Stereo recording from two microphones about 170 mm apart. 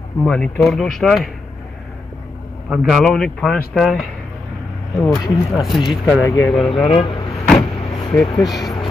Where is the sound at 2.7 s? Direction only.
Centre (ahead or behind).